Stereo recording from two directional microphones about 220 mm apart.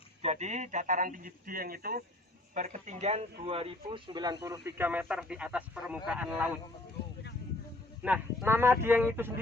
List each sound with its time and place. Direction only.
0.2 s speech: 30° right (ahead or behind); by 6.5 s 5° right (ahead or behind)
8.0 s speech: 5° right (ahead or behind)